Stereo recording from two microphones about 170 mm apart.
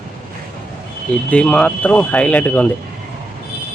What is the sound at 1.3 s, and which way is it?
Speech, 5° left (ahead or behind).